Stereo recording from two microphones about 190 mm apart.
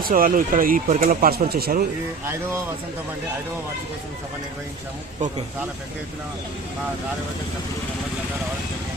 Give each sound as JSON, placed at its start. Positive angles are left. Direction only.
{"t": 0.0, "sound": "speech", "side_deg": -45}